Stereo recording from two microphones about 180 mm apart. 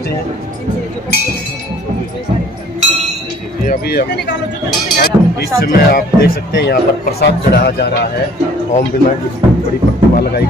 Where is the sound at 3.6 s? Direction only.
55° left (ahead or behind).